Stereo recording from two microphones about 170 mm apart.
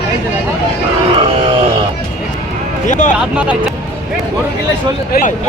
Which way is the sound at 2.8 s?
45° left (ahead or behind).